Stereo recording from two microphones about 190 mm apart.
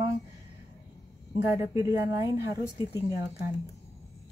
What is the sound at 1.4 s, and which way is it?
Speech, 15° right (ahead or behind).